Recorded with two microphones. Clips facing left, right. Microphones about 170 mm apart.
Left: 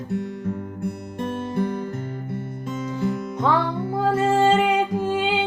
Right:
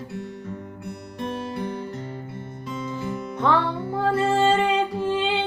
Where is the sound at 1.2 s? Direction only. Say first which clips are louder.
Left 4 dB; 50° left (ahead or behind).